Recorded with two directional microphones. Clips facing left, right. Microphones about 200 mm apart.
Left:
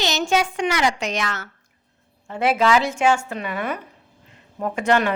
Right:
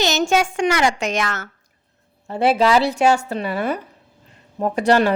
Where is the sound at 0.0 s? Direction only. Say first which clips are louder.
Right 3 dB; 45° right (ahead or behind).